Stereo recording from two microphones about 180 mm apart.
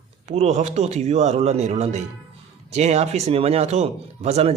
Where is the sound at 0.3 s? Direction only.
35° right (ahead or behind).